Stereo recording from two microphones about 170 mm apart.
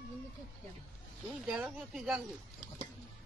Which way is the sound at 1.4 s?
Centre (ahead or behind).